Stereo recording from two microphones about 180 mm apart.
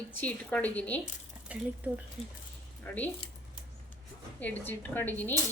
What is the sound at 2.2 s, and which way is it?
Speech, 30° left (ahead or behind).